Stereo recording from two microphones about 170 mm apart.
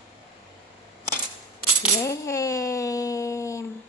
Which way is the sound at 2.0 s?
20° left (ahead or behind).